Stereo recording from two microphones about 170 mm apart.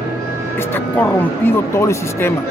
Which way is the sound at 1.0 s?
15° left (ahead or behind).